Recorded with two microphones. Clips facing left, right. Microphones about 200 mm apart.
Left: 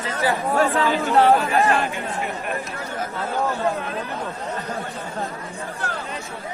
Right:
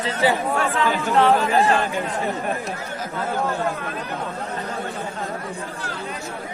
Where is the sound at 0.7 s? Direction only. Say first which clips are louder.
Left 1 dB; 35° left (ahead or behind).